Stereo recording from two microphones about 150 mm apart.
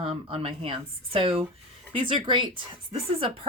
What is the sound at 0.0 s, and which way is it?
Speech, 40° right (ahead or behind).